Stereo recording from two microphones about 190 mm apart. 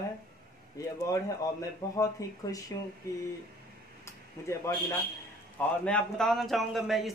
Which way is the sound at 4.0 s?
15° left (ahead or behind).